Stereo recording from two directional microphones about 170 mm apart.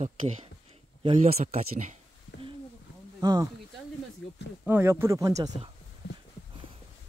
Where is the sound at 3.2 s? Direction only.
20° right (ahead or behind).